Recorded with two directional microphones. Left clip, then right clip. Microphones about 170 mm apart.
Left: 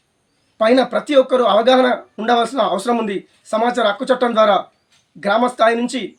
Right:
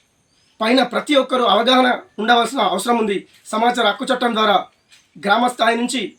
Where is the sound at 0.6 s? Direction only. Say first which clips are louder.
Left 3 dB; 45° left (ahead or behind).